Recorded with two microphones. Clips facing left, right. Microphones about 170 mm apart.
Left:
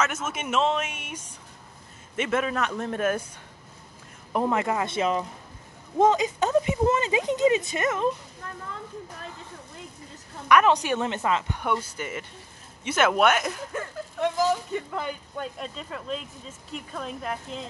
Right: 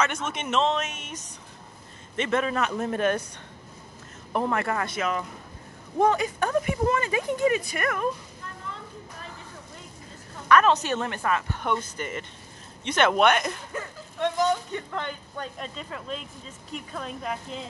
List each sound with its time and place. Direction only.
0.0 s speech: 5° left (ahead or behind)
4.3 s speech: 15° left (ahead or behind)
4.9 s speech: 30° left (ahead or behind)
10.5 s speech: 15° left (ahead or behind)